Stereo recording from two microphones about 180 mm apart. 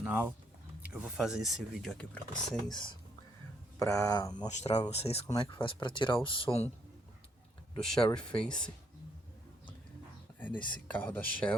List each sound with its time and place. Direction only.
0.0 s speech: 10° right (ahead or behind)
2.6 s speech: 25° left (ahead or behind)
4.4 s speech: 40° left (ahead or behind)
7.8 s speech: 5° left (ahead or behind)
10.4 s speech: 10° left (ahead or behind)